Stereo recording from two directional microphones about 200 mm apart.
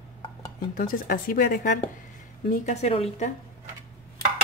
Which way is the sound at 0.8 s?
45° left (ahead or behind).